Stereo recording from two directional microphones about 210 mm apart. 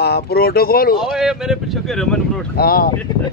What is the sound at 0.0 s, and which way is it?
Speech, 50° left (ahead or behind).